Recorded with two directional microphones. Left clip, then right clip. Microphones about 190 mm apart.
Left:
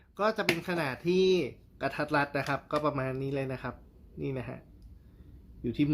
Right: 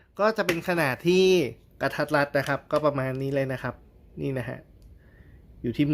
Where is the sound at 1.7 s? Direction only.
35° right (ahead or behind).